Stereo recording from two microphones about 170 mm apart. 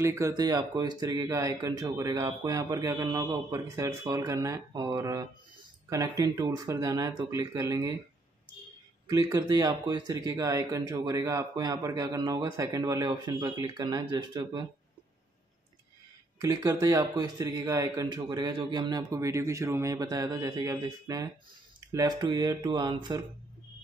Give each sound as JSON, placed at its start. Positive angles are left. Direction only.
{"t": 0.0, "sound": "speech", "side_deg": -20}
{"t": 9.0, "sound": "speech", "side_deg": -20}
{"t": 16.3, "sound": "speech", "side_deg": -25}